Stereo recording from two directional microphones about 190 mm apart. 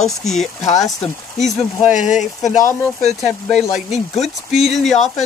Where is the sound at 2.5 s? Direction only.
40° left (ahead or behind).